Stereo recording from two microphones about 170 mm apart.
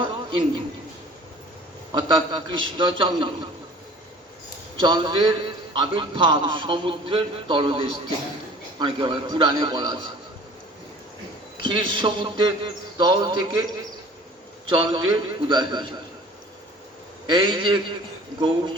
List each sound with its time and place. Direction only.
0.0 s a sound: 30° right (ahead or behind)
1.9 s a man's voice: 25° right (ahead or behind)
4.8 s a man's voice: 30° right (ahead or behind)
11.6 s a man's voice: 30° right (ahead or behind)
14.7 s a man's voice: 30° right (ahead or behind)
17.2 s a man's voice: 25° right (ahead or behind)